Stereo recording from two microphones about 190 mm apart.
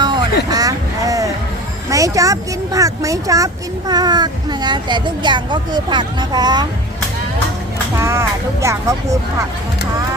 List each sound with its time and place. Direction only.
0.0 s vehicle: 25° right (ahead or behind)
0.5 s a sound: 20° right (ahead or behind)
1.9 s speech: 15° right (ahead or behind)
7.9 s speech: 15° right (ahead or behind)